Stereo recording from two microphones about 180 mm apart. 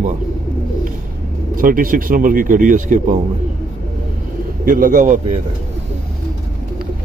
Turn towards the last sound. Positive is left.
turn(degrees=-45)  # may be behind; listen again after turning